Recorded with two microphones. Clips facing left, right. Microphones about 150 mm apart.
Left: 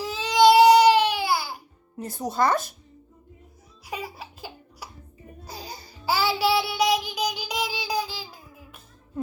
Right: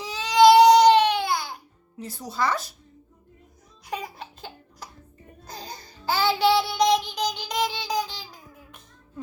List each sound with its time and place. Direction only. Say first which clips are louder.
0.0 s baby cry: right 2 dB; 5° left (ahead or behind)
2.0 s speech: left 4 dB; 50° left (ahead or behind)
3.8 s laughter: right 1 dB; 5° left (ahead or behind)
5.5 s child singing: even; 10° left (ahead or behind)